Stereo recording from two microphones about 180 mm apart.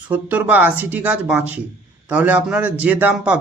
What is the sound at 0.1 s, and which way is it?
Speech, 10° right (ahead or behind).